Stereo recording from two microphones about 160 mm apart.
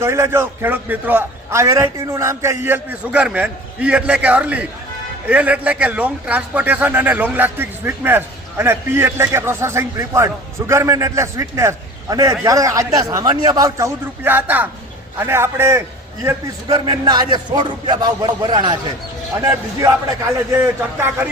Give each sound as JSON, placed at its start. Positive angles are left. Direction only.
{"t": 0.0, "sound": "a man's voice", "side_deg": -15}
{"t": 16.2, "sound": "a man's voice", "side_deg": -25}